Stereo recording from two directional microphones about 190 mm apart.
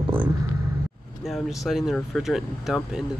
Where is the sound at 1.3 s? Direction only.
Centre (ahead or behind).